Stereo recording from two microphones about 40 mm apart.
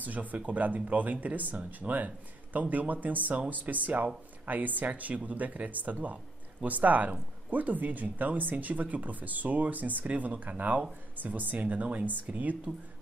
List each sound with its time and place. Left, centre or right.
0.0 s speech: right